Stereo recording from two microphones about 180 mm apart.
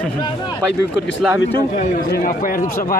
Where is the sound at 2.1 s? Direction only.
50° left (ahead or behind).